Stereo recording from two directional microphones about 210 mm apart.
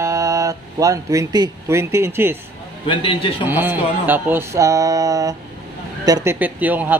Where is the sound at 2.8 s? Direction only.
25° left (ahead or behind).